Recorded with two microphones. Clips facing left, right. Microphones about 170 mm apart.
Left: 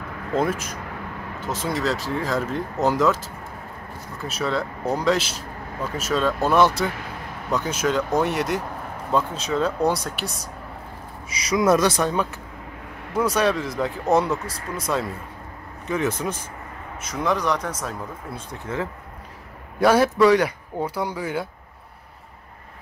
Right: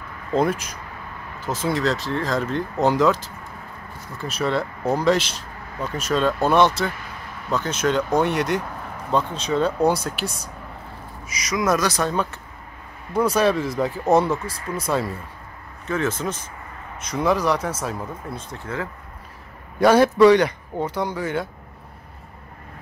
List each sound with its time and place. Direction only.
0.3 s speech: centre (ahead or behind)
11.2 s a man's voice: 30° left (ahead or behind)
12.0 s speech: 10° left (ahead or behind)
13.1 s speech: centre (ahead or behind)
15.9 s speech: 15° left (ahead or behind)
17.0 s speech: centre (ahead or behind)
18.3 s speech: 10° left (ahead or behind)
19.8 s speech: 5° left (ahead or behind)